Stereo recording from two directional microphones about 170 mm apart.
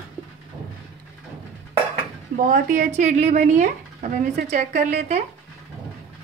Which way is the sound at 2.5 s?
50° right (ahead or behind).